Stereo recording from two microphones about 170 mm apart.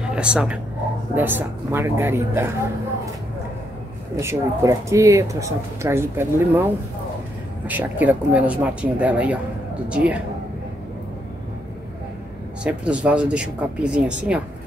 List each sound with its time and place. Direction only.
0.0 s speech: 5° right (ahead or behind)
4.2 s speech: 15° right (ahead or behind)
12.6 s speech: 5° right (ahead or behind)